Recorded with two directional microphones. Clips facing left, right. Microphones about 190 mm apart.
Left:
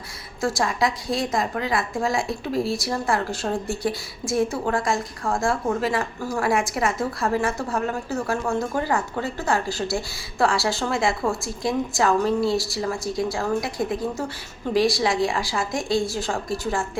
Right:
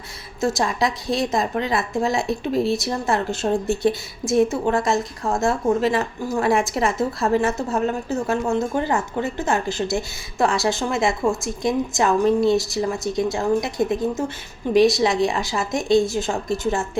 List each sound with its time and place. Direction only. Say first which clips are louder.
0.4 s a woman's voice: right 2 dB; 25° right (ahead or behind)